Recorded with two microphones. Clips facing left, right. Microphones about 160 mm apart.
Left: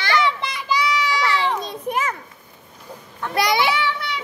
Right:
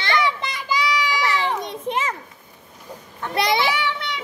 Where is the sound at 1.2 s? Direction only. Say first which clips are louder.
Left 1 dB; 20° right (ahead or behind).